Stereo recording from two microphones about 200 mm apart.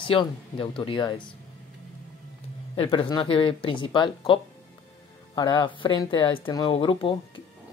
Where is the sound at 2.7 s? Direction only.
25° left (ahead or behind).